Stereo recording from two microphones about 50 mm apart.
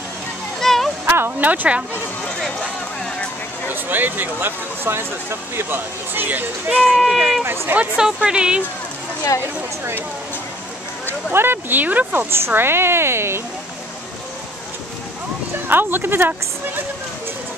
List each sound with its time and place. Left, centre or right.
0.6 s a sound: centre
1.0 s a sound: right
1.4 s speech: right
3.6 s speech: right
6.9 s speech: centre
7.2 s speech: centre
7.4 s speech: right
7.7 s speech: right
11.3 s speech: right
11.8 s speech: right
12.3 s speech: right
15.7 s speech: right